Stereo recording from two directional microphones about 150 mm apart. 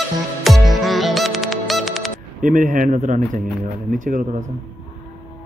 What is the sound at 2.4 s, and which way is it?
Speech, 60° right (ahead or behind).